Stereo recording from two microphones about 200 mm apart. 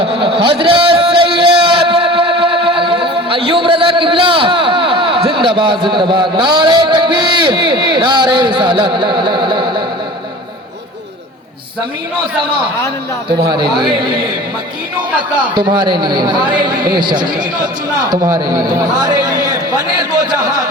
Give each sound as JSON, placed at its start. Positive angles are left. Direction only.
{"t": 0.0, "sound": "a sound", "side_deg": -30}
{"t": 13.5, "sound": "speech", "side_deg": -25}
{"t": 15.5, "sound": "a man's voice", "side_deg": -20}